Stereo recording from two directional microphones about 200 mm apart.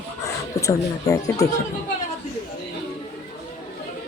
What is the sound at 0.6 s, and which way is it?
Speech, 15° left (ahead or behind).